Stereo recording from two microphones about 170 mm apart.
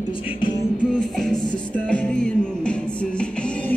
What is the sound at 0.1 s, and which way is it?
Music, 30° left (ahead or behind).